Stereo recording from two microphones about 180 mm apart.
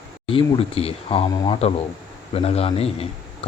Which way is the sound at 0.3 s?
30° left (ahead or behind).